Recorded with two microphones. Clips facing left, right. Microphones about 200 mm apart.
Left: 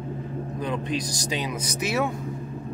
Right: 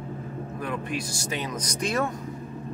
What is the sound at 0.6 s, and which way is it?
Speech, 20° left (ahead or behind).